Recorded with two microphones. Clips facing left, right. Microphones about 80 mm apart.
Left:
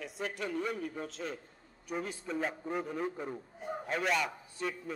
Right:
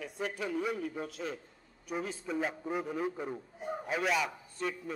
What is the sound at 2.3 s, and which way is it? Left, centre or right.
A man's voice, centre.